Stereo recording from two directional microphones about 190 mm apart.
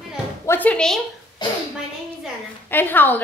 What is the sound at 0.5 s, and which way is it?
Speech, 10° left (ahead or behind).